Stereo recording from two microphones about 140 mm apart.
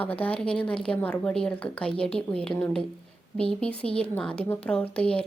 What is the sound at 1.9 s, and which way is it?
Speech, 40° left (ahead or behind).